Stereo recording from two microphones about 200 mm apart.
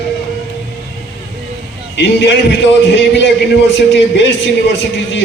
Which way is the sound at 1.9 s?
60° left (ahead or behind).